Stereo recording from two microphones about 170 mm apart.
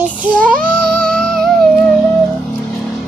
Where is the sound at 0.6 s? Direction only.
5° left (ahead or behind).